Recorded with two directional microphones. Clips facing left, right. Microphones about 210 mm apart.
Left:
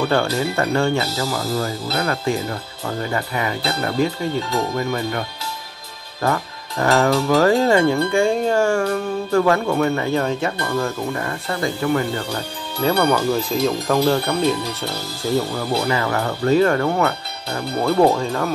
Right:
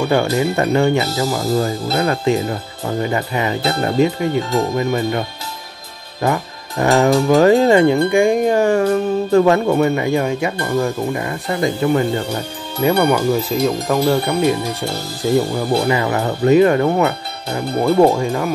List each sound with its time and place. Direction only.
0.0 s speech: 15° right (ahead or behind)
6.2 s speech: 20° right (ahead or behind); by 14.1 s centre (ahead or behind)
14.1 s speech: 10° right (ahead or behind)